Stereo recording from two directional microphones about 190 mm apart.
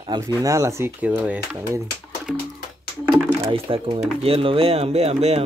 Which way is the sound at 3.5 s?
25° right (ahead or behind).